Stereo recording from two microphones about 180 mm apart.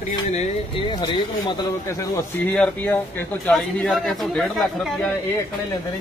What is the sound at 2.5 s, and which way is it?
A man's voice, 5° left (ahead or behind).